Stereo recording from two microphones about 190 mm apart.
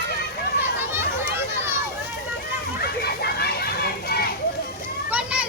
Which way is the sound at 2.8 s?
55° left (ahead or behind).